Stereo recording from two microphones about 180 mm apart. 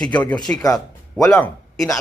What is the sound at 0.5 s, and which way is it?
Speech, 20° left (ahead or behind).